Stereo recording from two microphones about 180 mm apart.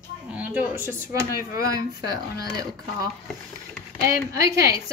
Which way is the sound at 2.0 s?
20° right (ahead or behind).